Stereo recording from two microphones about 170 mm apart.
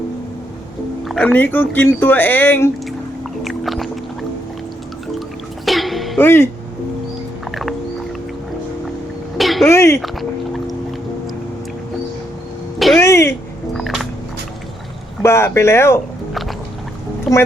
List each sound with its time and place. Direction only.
1.0 s speech: 5° left (ahead or behind)
3.4 s boat: centre (ahead or behind)
5.6 s music: centre (ahead or behind)
6.1 s speech: 15° left (ahead or behind)
9.4 s a sound: centre (ahead or behind)
9.6 s speech: 15° left (ahead or behind)
10.0 s boat: centre (ahead or behind)
13.0 s a sound: 15° left (ahead or behind)
13.7 s a sound: centre (ahead or behind)
15.2 s speech: 15° left (ahead or behind)